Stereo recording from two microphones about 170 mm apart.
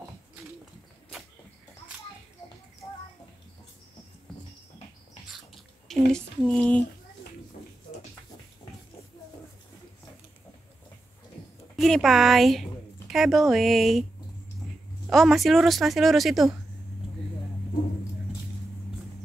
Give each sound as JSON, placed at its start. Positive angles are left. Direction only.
{"t": 5.5, "sound": "a sound", "side_deg": 5}
{"t": 11.7, "sound": "speech", "side_deg": 0}
{"t": 15.0, "sound": "speech", "side_deg": 0}